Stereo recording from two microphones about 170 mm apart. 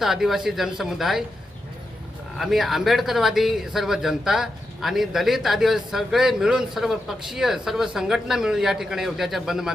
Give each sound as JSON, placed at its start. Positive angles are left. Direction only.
{"t": 0.0, "sound": "speech", "side_deg": 0}
{"t": 2.4, "sound": "speech", "side_deg": 0}